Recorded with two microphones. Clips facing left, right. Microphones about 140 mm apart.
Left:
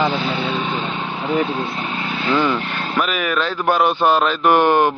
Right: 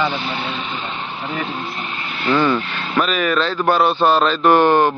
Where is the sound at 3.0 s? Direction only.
10° left (ahead or behind).